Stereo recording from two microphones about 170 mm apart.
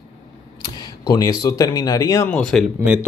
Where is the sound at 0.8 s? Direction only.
20° left (ahead or behind).